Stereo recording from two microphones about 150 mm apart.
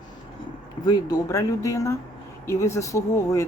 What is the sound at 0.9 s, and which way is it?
Speech, 25° left (ahead or behind).